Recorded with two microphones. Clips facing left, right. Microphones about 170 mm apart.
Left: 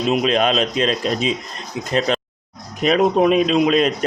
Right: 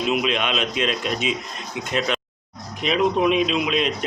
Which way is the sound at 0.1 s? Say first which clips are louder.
Left 7 dB; 40° left (ahead or behind).